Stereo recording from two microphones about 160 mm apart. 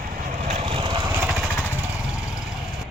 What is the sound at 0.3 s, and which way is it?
Lawn mower, 40° right (ahead or behind).